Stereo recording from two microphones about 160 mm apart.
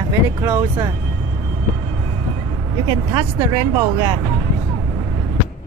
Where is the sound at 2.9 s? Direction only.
20° right (ahead or behind).